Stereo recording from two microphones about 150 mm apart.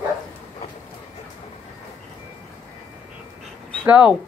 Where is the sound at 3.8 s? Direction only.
10° right (ahead or behind).